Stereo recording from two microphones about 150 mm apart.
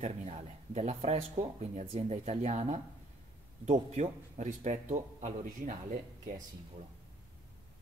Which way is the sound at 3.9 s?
50° right (ahead or behind).